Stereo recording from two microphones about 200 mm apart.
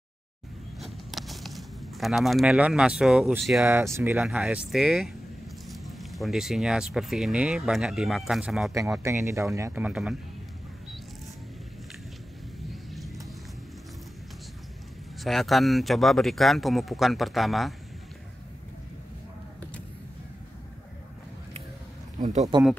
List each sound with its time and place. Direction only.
0.7 s a sound: centre (ahead or behind)
3.6 s speech: 15° right (ahead or behind)
9.0 s speech: 15° right (ahead or behind)
12.9 s a sound: centre (ahead or behind)
15.2 s speech: centre (ahead or behind)
22.2 s speech: 35° right (ahead or behind)